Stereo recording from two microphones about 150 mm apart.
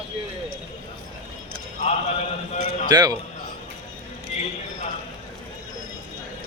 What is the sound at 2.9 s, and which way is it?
Speech, 25° right (ahead or behind).